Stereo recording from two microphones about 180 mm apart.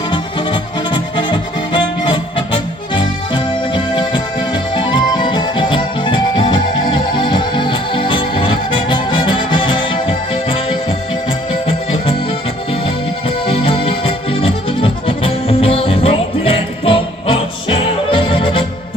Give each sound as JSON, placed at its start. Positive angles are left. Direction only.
{"t": 0.1, "sound": "music", "side_deg": 25}